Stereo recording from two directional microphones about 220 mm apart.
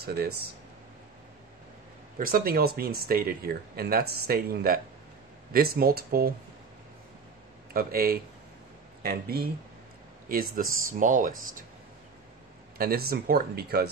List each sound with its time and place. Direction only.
0.0 s speech: 45° right (ahead or behind)
2.1 s speech: 40° right (ahead or behind)
7.7 s speech: 40° right (ahead or behind)
12.7 s speech: 45° right (ahead or behind)